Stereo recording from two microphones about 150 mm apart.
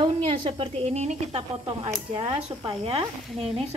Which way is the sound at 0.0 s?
35° right (ahead or behind).